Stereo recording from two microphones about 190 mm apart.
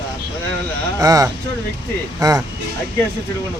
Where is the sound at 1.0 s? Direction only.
20° right (ahead or behind).